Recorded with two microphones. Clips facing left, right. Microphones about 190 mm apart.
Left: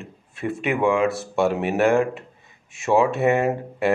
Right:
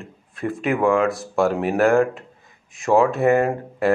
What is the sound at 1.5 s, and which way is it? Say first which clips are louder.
Speech: right 2 dB; 25° left (ahead or behind).